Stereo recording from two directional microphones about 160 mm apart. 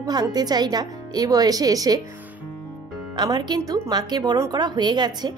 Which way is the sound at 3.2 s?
25° right (ahead or behind).